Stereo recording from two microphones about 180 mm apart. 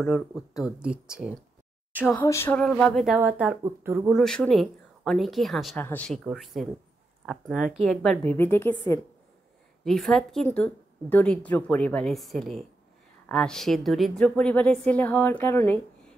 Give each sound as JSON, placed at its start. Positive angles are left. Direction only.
{"t": 0.0, "sound": "speech", "side_deg": 0}
{"t": 2.1, "sound": "a woman's voice", "side_deg": 15}
{"t": 2.6, "sound": "speech", "side_deg": 5}
{"t": 4.1, "sound": "speech", "side_deg": 5}
{"t": 9.8, "sound": "a woman's voice", "side_deg": 0}